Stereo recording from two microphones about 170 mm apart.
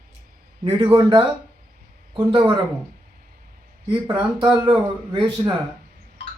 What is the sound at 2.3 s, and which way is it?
Speech, 30° right (ahead or behind).